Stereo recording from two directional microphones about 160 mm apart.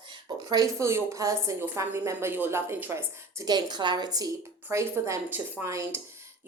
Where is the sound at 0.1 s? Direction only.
25° right (ahead or behind).